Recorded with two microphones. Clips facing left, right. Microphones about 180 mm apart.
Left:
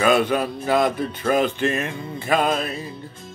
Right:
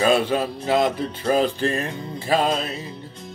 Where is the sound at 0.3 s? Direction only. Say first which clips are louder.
Even; 25° right (ahead or behind).